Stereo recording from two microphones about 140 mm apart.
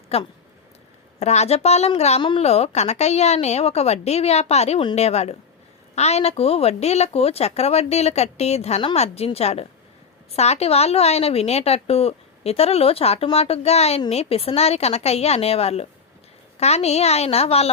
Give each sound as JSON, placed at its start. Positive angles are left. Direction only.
{"t": 0.1, "sound": "a woman's voice", "side_deg": 45}